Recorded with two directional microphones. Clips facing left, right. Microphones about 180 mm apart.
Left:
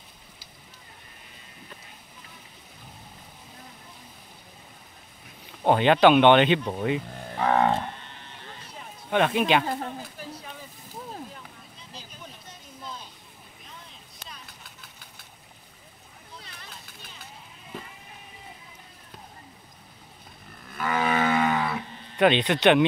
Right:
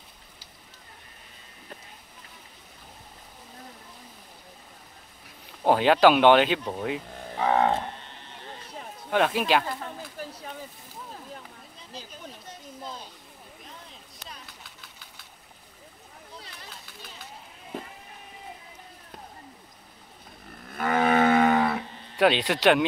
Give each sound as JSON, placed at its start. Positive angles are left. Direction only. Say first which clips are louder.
{"t": 5.6, "sound": "speech", "louder": "even", "side_deg": -5}
{"t": 9.1, "sound": "speech", "louder": "left 1 dB", "side_deg": 0}
{"t": 20.7, "sound": "cattle", "louder": "right 3 dB", "side_deg": -50}
{"t": 22.1, "sound": "speech", "louder": "left 1 dB", "side_deg": -5}